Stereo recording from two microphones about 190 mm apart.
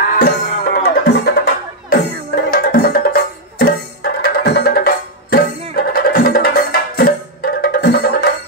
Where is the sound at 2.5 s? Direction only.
50° left (ahead or behind).